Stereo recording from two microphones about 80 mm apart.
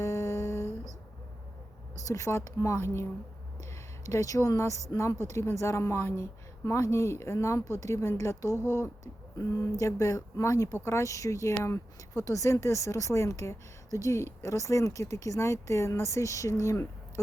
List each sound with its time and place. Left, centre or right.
0.0 s a sound: left
2.0 s speech: left
9.4 s speech: left